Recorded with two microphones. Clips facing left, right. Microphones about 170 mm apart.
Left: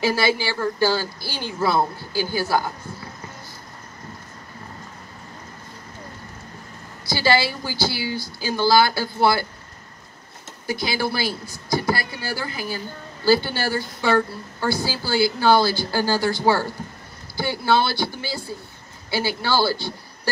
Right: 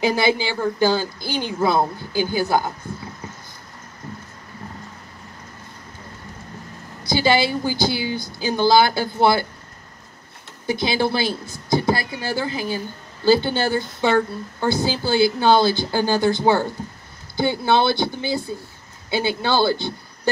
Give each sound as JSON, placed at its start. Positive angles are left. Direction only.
{"t": 0.0, "sound": "a woman's voice", "side_deg": -20}
{"t": 7.0, "sound": "a woman's voice", "side_deg": -20}
{"t": 10.7, "sound": "a woman's voice", "side_deg": -20}